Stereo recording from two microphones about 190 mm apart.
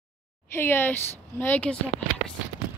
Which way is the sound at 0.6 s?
10° left (ahead or behind).